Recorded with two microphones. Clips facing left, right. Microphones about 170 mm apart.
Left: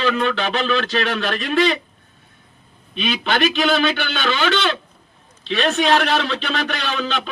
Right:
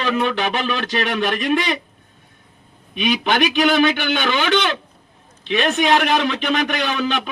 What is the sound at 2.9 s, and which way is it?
A man's voice, 15° right (ahead or behind).